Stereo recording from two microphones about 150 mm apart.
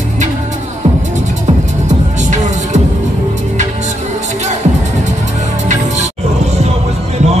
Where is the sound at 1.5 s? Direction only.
45° right (ahead or behind).